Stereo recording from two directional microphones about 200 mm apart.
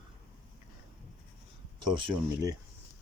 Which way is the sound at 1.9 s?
20° right (ahead or behind).